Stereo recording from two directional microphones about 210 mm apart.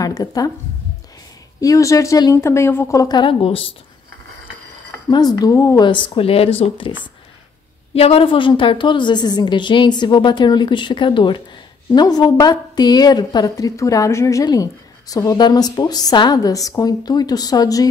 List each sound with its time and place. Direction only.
0.0 s a sound: 15° left (ahead or behind)
1.6 s a woman's voice: 15° left (ahead or behind)
5.1 s a woman's voice: 20° left (ahead or behind)
7.9 s a woman's voice: 30° left (ahead or behind)